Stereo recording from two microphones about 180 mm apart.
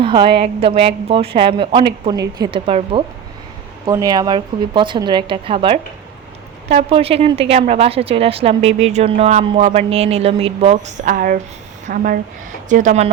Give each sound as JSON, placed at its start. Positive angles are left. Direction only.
{"t": 0.0, "sound": "a woman's voice", "side_deg": -25}
{"t": 3.8, "sound": "a woman's voice", "side_deg": -20}